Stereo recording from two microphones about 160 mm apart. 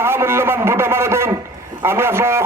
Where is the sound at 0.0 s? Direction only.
15° right (ahead or behind).